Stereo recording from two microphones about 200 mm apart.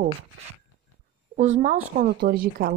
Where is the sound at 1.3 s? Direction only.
35° right (ahead or behind).